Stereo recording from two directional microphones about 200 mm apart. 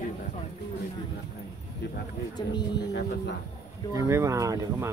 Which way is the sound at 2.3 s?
20° left (ahead or behind).